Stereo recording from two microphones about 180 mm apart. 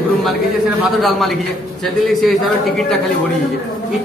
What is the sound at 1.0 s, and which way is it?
Speech, centre (ahead or behind).